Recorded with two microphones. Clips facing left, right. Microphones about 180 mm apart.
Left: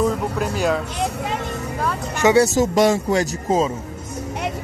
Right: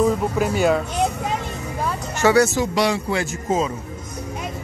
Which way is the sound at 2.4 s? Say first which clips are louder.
Left 4 dB; 45° left (ahead or behind).